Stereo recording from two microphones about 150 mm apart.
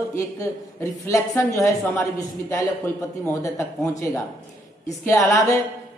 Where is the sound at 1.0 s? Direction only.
20° left (ahead or behind).